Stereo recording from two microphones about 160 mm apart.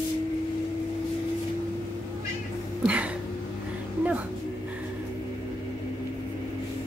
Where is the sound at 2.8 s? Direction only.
10° right (ahead or behind).